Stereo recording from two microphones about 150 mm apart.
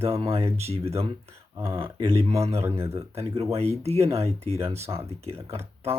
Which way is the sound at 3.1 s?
40° right (ahead or behind).